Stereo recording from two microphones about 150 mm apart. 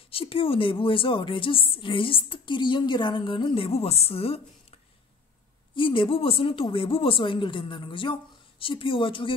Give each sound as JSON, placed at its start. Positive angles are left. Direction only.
{"t": 0.1, "sound": "a woman's voice", "side_deg": 40}
{"t": 5.8, "sound": "a woman's voice", "side_deg": 35}